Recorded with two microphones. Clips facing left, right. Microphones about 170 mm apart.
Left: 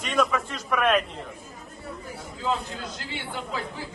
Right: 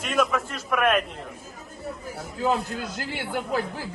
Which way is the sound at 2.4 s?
65° right (ahead or behind).